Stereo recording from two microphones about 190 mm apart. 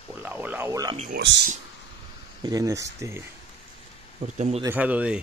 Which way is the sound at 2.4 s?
20° right (ahead or behind).